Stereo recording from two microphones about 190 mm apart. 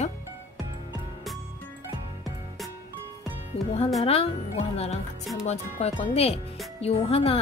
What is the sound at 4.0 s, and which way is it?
Speech, 30° left (ahead or behind).